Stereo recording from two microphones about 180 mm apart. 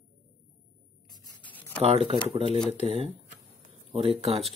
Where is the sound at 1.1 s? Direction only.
25° left (ahead or behind).